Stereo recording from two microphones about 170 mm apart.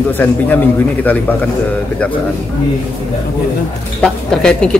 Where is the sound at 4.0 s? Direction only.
5° left (ahead or behind).